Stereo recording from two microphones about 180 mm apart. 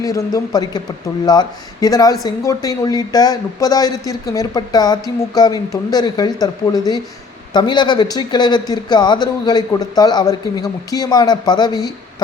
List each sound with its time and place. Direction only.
0.0 s speech: 20° left (ahead or behind)